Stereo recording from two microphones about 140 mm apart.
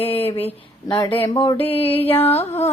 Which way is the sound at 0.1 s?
45° left (ahead or behind).